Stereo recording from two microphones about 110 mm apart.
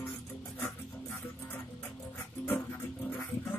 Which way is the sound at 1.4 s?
15° left (ahead or behind).